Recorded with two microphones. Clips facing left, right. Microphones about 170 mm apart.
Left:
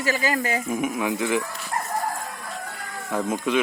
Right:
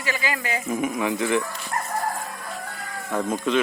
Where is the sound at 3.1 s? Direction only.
10° left (ahead or behind).